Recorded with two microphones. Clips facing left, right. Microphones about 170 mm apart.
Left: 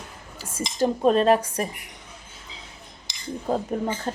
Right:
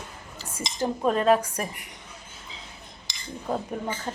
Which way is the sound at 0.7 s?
25° left (ahead or behind).